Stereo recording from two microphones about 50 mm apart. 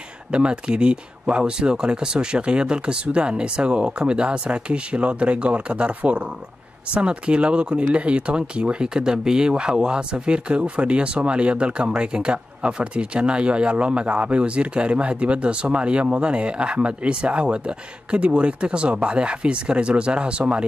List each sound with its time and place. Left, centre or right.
0.3 s speech: centre